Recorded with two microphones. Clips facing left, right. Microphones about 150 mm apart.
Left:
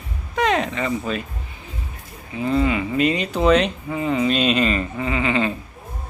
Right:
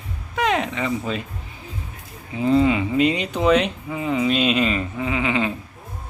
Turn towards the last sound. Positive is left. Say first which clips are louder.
# left 1 dB
turn(degrees=-10)  # may be behind; listen again after turning